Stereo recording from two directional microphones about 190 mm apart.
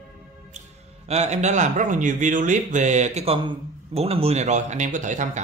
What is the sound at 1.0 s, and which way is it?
Speech, 35° right (ahead or behind).